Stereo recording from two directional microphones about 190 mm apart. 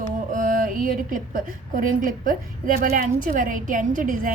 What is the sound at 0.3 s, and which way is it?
A woman's voice, 45° right (ahead or behind).